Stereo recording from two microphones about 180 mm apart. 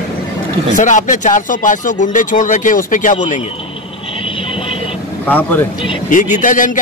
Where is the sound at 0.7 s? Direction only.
45° left (ahead or behind).